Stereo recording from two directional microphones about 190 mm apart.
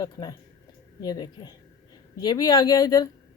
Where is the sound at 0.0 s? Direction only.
20° left (ahead or behind).